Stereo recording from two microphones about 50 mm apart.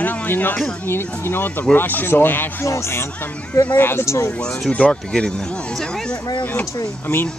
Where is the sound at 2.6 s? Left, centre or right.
Left.